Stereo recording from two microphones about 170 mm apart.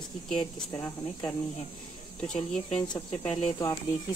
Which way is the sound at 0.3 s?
10° left (ahead or behind).